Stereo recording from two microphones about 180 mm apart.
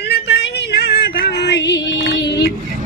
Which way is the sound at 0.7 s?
65° left (ahead or behind).